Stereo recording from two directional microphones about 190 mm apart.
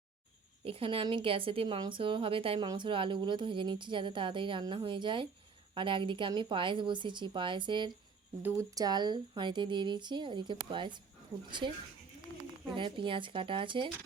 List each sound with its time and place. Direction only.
0.6 s a woman's voice: 30° right (ahead or behind)
8.4 s a woman's voice: 15° right (ahead or behind)